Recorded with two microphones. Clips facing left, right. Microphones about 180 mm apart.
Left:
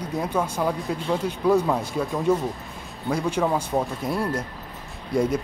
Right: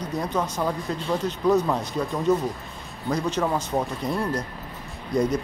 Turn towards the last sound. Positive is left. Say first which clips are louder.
# even
turn(degrees=5)  # may be behind; listen again after turning